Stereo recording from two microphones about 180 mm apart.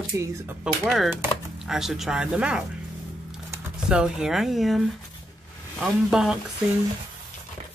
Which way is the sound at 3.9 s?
5° right (ahead or behind).